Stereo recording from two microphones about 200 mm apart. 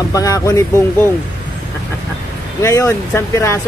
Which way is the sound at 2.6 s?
15° left (ahead or behind).